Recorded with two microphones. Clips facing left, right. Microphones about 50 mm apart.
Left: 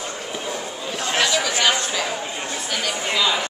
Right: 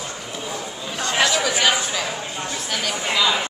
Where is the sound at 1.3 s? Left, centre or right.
Centre.